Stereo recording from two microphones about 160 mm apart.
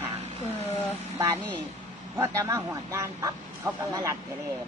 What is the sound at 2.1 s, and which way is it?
Speech, 20° right (ahead or behind).